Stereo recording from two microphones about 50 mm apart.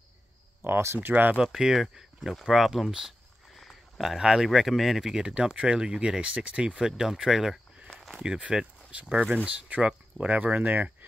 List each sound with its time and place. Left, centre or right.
0.7 s speech: right
0.9 s speech: right
1.4 s speech: centre
2.3 s a sound: centre
4.2 s speech: centre
4.5 s speech: centre; by 11.1 s right